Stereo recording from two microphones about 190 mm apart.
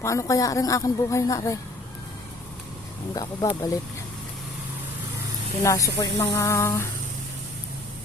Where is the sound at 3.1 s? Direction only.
20° left (ahead or behind).